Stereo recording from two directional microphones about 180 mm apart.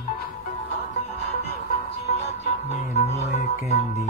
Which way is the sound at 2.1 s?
35° left (ahead or behind).